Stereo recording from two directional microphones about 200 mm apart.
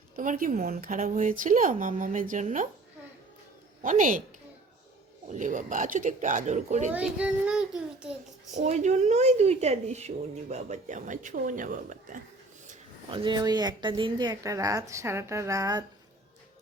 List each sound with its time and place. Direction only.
0.2 s speech: 45° right (ahead or behind)
3.8 s speech: 40° right (ahead or behind)
5.3 s speech: 40° right (ahead or behind)
6.9 s a child's voice: 5° right (ahead or behind)
8.5 s speech: 35° right (ahead or behind)
13.1 s a woman's voice: 20° right (ahead or behind)